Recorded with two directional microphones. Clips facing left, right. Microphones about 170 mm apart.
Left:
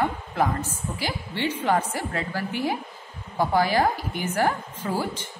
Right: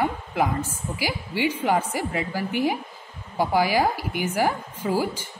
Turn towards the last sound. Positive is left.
turn(degrees=-10)  # may be behind; listen again after turning